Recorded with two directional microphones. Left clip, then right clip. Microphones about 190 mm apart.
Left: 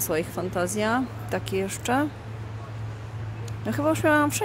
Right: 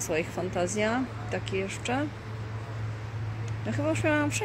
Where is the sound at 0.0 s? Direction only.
20° left (ahead or behind).